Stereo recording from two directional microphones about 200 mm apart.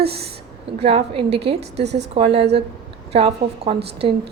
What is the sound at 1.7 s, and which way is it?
Speech, 55° right (ahead or behind).